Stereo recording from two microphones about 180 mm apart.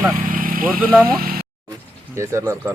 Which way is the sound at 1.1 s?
55° right (ahead or behind).